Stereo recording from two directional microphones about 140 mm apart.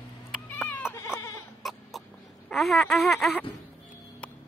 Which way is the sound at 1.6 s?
Centre (ahead or behind).